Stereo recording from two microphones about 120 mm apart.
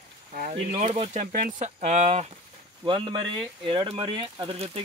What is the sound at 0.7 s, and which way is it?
Speech, 70° right (ahead or behind).